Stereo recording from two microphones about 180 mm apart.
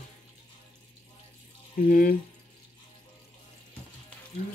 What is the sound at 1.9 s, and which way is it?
Speech, 50° left (ahead or behind).